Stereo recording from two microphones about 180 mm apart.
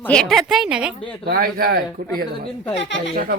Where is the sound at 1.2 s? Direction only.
55° right (ahead or behind).